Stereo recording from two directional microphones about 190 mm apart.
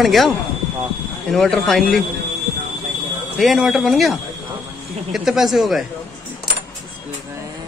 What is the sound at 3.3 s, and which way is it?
Speech, centre (ahead or behind).